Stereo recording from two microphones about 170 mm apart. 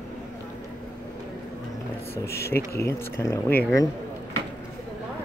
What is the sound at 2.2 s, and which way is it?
Speech, 15° left (ahead or behind).